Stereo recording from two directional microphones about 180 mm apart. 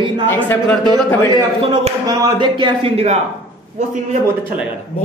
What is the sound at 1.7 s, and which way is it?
Speech, 20° right (ahead or behind).